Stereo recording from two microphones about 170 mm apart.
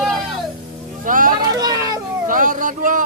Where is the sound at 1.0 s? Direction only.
55° right (ahead or behind).